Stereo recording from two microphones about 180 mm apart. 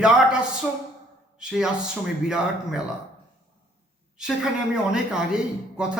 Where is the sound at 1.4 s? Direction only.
5° right (ahead or behind).